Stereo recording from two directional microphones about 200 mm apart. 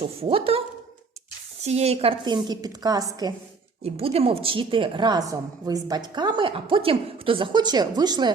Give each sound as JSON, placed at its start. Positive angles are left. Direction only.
{"t": 0.0, "sound": "a woman's voice", "side_deg": -30}
{"t": 1.6, "sound": "a woman's voice", "side_deg": -30}
{"t": 3.8, "sound": "a woman's voice", "side_deg": -30}